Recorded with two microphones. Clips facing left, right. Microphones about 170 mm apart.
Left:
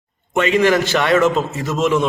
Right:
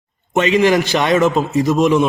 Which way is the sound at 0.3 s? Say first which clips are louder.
Right 1 dB; 20° right (ahead or behind).